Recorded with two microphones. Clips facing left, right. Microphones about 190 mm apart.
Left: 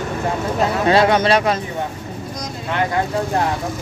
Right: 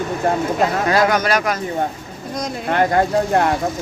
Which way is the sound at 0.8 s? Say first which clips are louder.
Left 6 dB; 25° left (ahead or behind).